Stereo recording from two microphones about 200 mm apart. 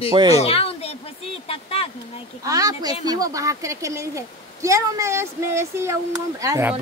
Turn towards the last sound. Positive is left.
turn(degrees=-15)  # may be behind; listen again after turning